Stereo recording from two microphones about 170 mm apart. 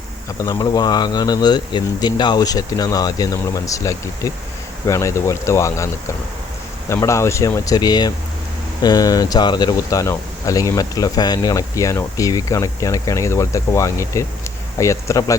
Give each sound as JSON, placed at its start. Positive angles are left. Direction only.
{"t": 0.4, "sound": "speech", "side_deg": 20}